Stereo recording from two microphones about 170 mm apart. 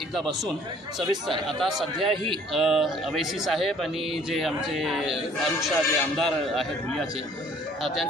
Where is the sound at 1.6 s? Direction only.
Centre (ahead or behind).